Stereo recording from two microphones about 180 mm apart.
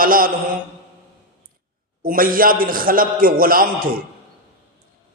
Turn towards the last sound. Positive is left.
turn(degrees=-50)  # may be behind; listen again after turning